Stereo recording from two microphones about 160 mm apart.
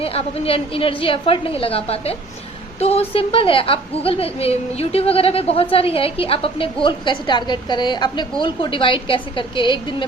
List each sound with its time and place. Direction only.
0.0 s a woman's voice: 40° left (ahead or behind)